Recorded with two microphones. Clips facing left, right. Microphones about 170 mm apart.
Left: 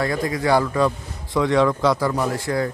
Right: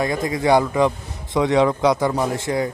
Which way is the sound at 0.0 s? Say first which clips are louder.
Right 1 dB; 20° right (ahead or behind).